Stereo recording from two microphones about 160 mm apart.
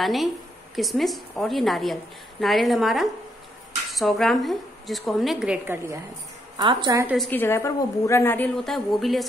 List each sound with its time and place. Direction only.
0.0 s a woman's voice: centre (ahead or behind)
6.5 s a woman's voice: 25° right (ahead or behind)
7.2 s a woman's voice: 10° left (ahead or behind)
8.5 s a woman's voice: centre (ahead or behind)